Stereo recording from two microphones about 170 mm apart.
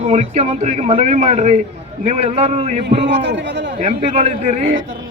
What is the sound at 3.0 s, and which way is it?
Speech, 90° right.